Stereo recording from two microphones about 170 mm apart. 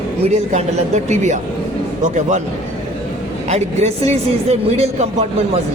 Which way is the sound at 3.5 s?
40° right (ahead or behind).